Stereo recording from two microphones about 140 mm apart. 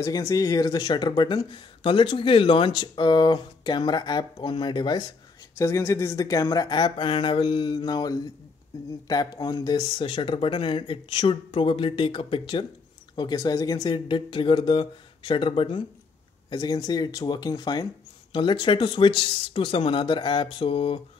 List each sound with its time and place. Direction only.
0.0 s speech: 25° left (ahead or behind)
5.6 s speech: 20° left (ahead or behind); by 21.0 s 40° left (ahead or behind)